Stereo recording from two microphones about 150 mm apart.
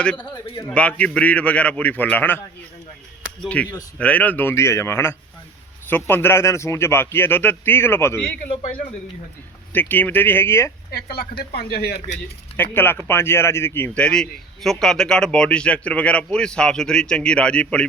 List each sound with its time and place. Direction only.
0.2 s a man's voice: 30° left (ahead or behind)
0.7 s a man's voice: 10° left (ahead or behind)
3.4 s a man's voice: 10° left (ahead or behind)
9.7 s a man's voice: 15° left (ahead or behind)
10.9 s speech: 90° left
11.9 s speech: 50° left (ahead or behind)
12.5 s a man's voice: 15° left (ahead or behind)